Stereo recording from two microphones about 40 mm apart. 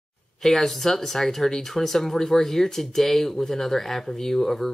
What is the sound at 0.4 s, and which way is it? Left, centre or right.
Speech, centre.